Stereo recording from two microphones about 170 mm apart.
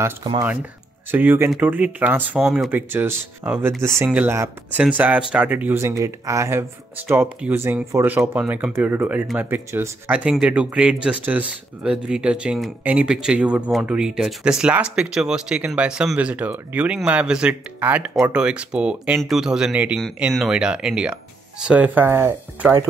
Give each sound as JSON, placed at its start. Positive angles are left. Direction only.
{"t": 0.2, "sound": "speech", "side_deg": -25}
{"t": 1.1, "sound": "speech", "side_deg": -10}